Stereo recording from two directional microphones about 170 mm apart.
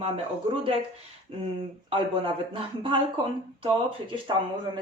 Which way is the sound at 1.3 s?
30° right (ahead or behind).